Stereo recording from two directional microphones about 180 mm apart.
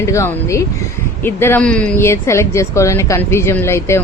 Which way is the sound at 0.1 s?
15° left (ahead or behind).